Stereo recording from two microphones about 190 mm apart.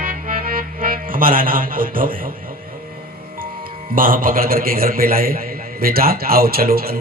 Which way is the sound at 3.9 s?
50° right (ahead or behind).